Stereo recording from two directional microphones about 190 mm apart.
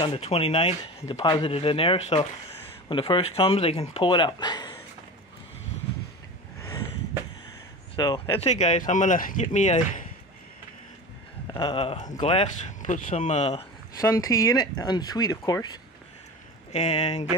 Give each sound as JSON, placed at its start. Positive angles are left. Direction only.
{"t": 0.0, "sound": "speech", "side_deg": 30}
{"t": 7.9, "sound": "speech", "side_deg": 25}
{"t": 8.4, "sound": "speech", "side_deg": 35}
{"t": 11.5, "sound": "speech", "side_deg": 25}
{"t": 13.9, "sound": "speech", "side_deg": 20}
{"t": 16.7, "sound": "speech", "side_deg": 35}